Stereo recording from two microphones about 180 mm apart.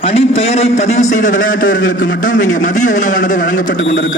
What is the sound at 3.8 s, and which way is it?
Speech, 85° left.